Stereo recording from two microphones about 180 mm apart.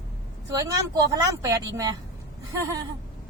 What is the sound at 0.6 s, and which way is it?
Speech, 20° right (ahead or behind).